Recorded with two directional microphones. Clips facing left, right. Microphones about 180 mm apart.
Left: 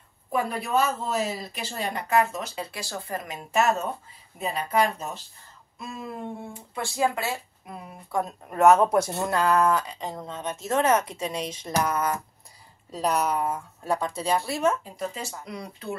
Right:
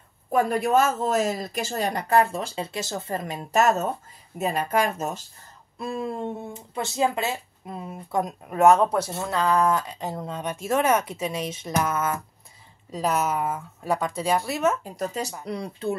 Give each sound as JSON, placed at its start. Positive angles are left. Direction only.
{"t": 0.3, "sound": "speech", "side_deg": -45}
{"t": 3.5, "sound": "speech", "side_deg": -40}
{"t": 5.8, "sound": "speech", "side_deg": -30}
{"t": 8.5, "sound": "speech", "side_deg": 0}
{"t": 14.8, "sound": "speech", "side_deg": -40}
{"t": 15.4, "sound": "speech", "side_deg": -30}